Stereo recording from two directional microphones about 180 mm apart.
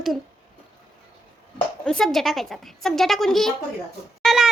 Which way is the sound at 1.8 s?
5° left (ahead or behind).